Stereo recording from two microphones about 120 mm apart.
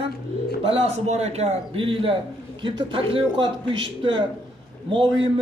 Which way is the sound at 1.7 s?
45° right (ahead or behind).